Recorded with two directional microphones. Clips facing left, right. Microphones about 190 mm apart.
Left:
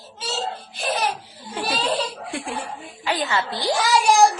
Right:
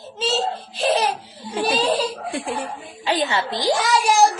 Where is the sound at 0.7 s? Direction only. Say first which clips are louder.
Right 6 dB; 30° right (ahead or behind).